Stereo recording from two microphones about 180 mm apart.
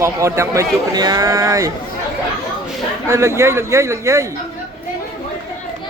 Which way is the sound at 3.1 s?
15° right (ahead or behind).